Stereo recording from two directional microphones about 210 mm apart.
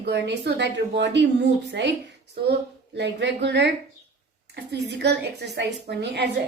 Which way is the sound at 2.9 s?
55° right (ahead or behind).